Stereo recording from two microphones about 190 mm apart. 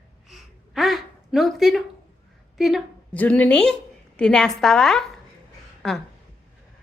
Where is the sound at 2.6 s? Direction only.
Centre (ahead or behind).